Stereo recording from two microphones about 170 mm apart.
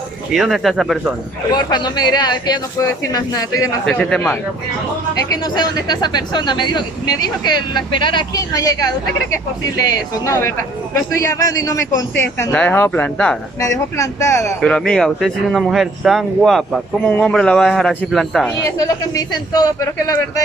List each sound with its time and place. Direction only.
0.3 s speech: centre (ahead or behind)
1.5 s speech: 25° left (ahead or behind)
3.8 s speech: 5° left (ahead or behind)
5.1 s speech: 25° left (ahead or behind)
10.2 s a man's voice: 15° left (ahead or behind)
13.6 s a man's voice: 20° left (ahead or behind)
14.6 s speech: 5° left (ahead or behind)
18.8 s speech: 20° left (ahead or behind)